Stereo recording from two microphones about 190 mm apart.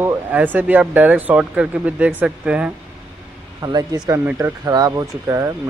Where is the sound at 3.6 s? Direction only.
20° right (ahead or behind).